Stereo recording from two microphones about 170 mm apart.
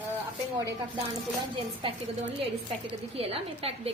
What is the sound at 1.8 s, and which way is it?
A woman's voice, 30° right (ahead or behind).